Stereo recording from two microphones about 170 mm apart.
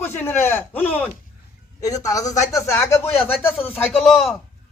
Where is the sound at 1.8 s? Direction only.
20° left (ahead or behind); by 4.4 s centre (ahead or behind).